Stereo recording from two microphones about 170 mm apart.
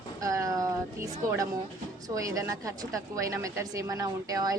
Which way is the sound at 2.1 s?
20° right (ahead or behind).